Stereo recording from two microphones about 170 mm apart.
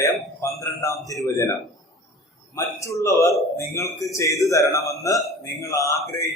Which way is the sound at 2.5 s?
20° left (ahead or behind).